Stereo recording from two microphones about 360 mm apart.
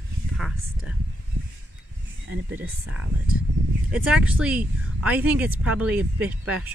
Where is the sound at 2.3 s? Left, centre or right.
Right.